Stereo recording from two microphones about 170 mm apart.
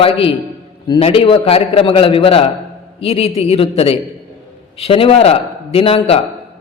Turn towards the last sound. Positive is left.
turn(degrees=35)  # may be behind; listen again after turning